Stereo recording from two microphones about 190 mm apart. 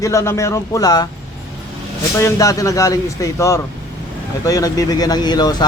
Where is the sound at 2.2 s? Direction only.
15° left (ahead or behind).